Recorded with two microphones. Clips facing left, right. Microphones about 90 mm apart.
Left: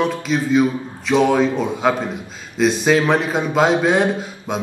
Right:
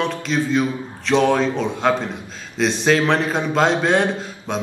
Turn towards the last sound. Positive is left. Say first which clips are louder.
# left 1 dB
turn(degrees=5)  # may be behind; listen again after turning